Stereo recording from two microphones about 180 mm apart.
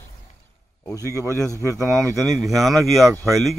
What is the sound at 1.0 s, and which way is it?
Speech, 15° right (ahead or behind).